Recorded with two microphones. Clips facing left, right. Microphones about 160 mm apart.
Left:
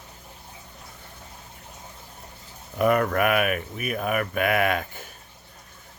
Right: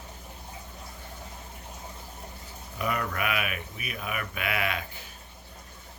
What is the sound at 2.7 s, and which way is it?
Speech, 50° left (ahead or behind).